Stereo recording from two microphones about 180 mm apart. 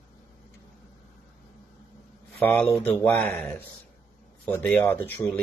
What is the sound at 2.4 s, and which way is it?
Speech, 10° left (ahead or behind).